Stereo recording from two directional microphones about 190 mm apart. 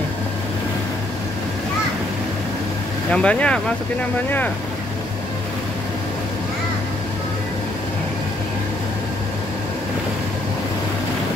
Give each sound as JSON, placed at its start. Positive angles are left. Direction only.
{"t": 3.1, "sound": "speech", "side_deg": 5}